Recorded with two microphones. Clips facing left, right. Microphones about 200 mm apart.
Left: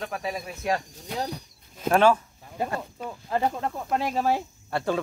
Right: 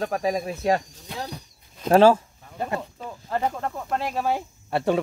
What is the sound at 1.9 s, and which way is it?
Speech, 30° right (ahead or behind).